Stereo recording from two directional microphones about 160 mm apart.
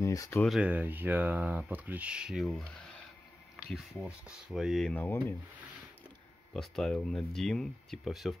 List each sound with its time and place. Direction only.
0.0 s speech: 20° left (ahead or behind)
0.4 s speech: centre (ahead or behind)
6.5 s speech: centre (ahead or behind)